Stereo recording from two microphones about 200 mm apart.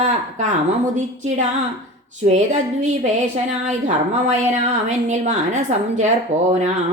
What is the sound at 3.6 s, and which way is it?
A woman's voice, 35° right (ahead or behind).